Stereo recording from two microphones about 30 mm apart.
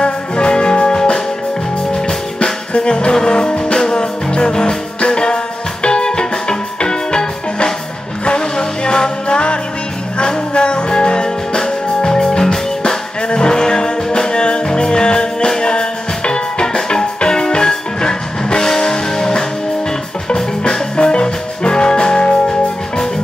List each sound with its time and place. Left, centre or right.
0.0 s music: left
2.7 s music: left
20.6 s music: left